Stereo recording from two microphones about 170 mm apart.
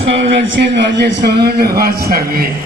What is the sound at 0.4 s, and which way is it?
A man's voice, 90° right.